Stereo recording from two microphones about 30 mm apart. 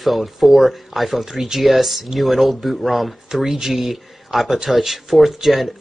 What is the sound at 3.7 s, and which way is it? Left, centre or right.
Speech, centre.